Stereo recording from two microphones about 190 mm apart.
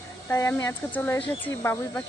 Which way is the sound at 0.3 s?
15° left (ahead or behind).